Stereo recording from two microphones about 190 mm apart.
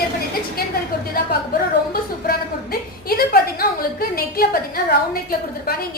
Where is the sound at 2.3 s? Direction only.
50° left (ahead or behind).